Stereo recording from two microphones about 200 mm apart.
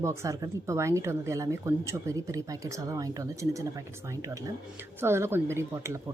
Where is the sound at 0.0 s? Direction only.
15° right (ahead or behind).